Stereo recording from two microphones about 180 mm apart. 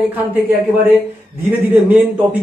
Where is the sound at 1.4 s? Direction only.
10° right (ahead or behind).